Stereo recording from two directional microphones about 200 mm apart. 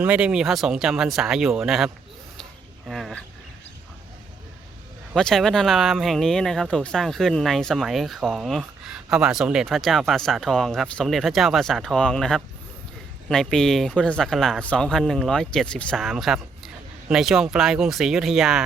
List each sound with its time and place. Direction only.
0.0 s speech: 5° right (ahead or behind)
2.4 s a sound: centre (ahead or behind)
5.1 s speech: centre (ahead or behind)